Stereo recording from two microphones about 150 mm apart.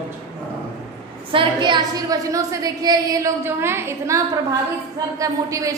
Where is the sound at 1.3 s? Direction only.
35° right (ahead or behind); by 4.2 s 15° right (ahead or behind).